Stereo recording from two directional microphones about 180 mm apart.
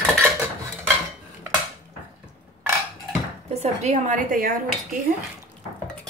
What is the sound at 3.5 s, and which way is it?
A woman's voice, 35° right (ahead or behind).